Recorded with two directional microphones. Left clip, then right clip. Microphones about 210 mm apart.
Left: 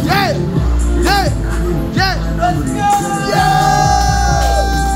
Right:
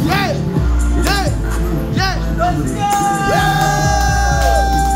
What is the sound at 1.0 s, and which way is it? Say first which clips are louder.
Music: left 4 dB; 20° left (ahead or behind).